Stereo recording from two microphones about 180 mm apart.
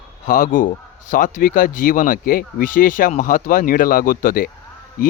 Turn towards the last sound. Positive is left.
turn(degrees=50)  # may be behind; listen again after turning